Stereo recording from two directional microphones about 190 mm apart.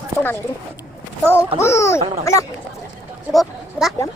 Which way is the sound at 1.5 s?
15° left (ahead or behind).